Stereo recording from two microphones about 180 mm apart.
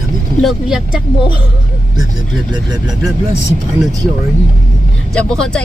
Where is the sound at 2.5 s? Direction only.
25° right (ahead or behind).